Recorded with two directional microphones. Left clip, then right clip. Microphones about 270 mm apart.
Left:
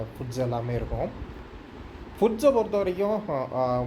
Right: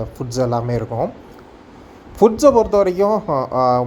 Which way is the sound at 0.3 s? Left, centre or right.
Right.